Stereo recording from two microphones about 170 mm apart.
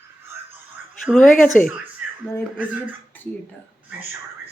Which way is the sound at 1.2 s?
50° left (ahead or behind).